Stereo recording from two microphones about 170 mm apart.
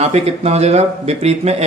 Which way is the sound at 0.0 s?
40° right (ahead or behind).